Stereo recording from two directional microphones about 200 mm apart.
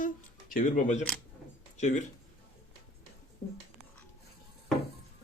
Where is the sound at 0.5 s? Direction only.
40° left (ahead or behind).